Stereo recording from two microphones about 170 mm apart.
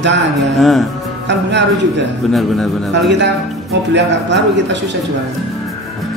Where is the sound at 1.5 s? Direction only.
90° right.